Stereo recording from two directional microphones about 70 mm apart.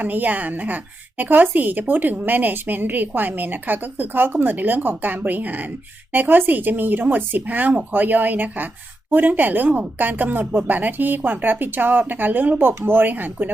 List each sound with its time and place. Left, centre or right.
0.0 s a woman's voice: right